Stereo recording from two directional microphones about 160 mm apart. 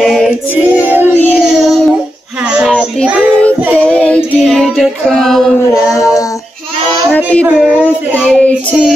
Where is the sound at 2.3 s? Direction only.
5° right (ahead or behind).